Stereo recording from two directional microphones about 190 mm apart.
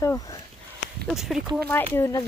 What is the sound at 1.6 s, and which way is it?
Speech, 10° left (ahead or behind).